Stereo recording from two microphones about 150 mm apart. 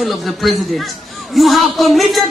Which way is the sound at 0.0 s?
Centre (ahead or behind).